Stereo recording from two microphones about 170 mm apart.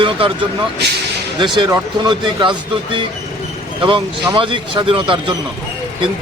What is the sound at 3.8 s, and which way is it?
Speech, 30° right (ahead or behind).